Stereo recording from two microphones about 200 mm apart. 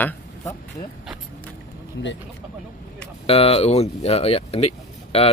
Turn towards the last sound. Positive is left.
turn(degrees=30)  # may be behind; listen again after turning